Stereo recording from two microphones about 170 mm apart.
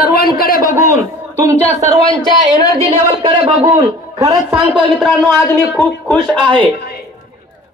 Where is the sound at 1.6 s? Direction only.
40° left (ahead or behind).